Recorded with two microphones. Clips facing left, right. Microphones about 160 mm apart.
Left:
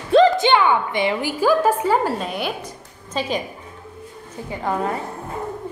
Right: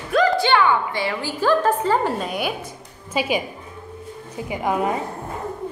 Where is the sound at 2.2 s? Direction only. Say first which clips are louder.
Even; 5° right (ahead or behind).